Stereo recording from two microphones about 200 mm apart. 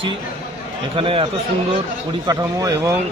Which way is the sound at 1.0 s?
25° right (ahead or behind).